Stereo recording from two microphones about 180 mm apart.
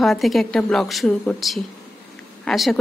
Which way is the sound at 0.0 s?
Centre (ahead or behind).